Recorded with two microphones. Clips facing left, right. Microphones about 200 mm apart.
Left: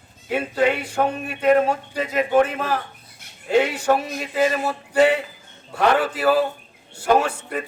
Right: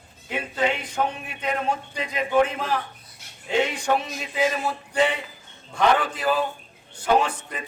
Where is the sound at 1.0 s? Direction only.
60° left (ahead or behind).